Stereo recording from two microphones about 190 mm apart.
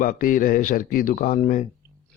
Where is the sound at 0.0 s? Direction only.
50° left (ahead or behind).